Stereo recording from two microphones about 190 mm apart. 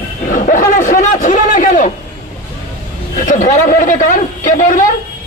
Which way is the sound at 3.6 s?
45° left (ahead or behind).